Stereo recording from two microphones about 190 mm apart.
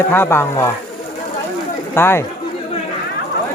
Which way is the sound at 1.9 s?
10° left (ahead or behind).